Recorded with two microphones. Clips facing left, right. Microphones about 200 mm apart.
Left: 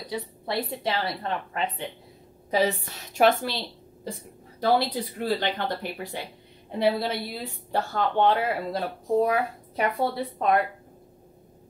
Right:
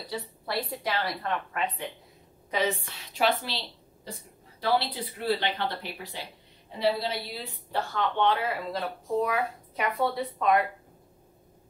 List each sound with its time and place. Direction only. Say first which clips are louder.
0.1 s a woman's voice: left 3 dB; 20° left (ahead or behind); by 3.5 s 50° left (ahead or behind)
4.6 s a woman's voice: left 4 dB; 45° left (ahead or behind)
7.7 s speech: left 4 dB; 45° left (ahead or behind)